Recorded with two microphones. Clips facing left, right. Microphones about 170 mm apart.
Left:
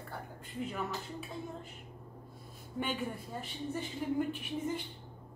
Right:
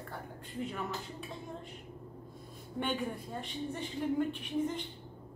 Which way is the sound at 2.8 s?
Centre (ahead or behind).